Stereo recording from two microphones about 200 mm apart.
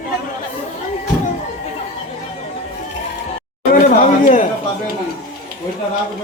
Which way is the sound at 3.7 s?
40° left (ahead or behind).